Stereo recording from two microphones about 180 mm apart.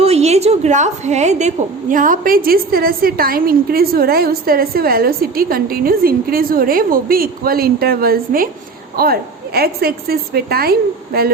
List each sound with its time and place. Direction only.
0.0 s a woman's voice: 35° right (ahead or behind); by 11.3 s 60° right (ahead or behind)